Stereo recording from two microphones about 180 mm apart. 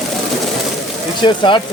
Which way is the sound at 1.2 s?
25° left (ahead or behind).